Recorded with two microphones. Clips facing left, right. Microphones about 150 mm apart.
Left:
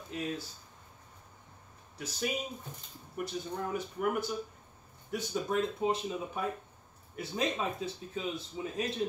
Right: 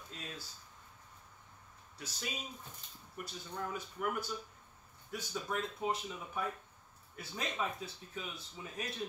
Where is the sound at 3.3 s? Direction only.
20° left (ahead or behind).